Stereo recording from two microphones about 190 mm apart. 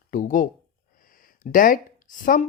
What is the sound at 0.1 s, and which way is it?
Speech, 45° left (ahead or behind).